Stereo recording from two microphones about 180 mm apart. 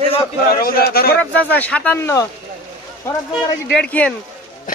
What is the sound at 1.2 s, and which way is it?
Speech, 10° left (ahead or behind).